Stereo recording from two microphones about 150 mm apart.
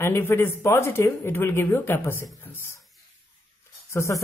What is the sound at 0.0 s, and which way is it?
Speech, 15° left (ahead or behind).